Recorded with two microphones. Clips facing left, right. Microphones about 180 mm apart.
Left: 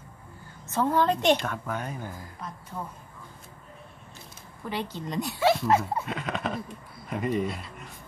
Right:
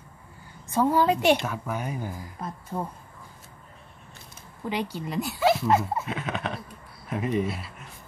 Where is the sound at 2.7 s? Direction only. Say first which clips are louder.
Right 6 dB; 50° right (ahead or behind).